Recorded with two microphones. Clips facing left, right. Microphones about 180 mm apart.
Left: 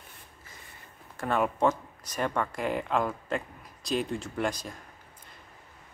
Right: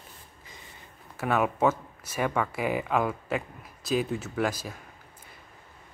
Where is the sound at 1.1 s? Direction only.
5° right (ahead or behind).